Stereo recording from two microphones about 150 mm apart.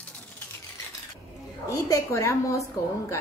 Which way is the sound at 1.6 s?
20° left (ahead or behind).